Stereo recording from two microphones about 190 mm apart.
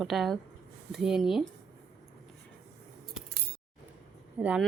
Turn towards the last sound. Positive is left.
turn(degrees=-5)  # may be behind; listen again after turning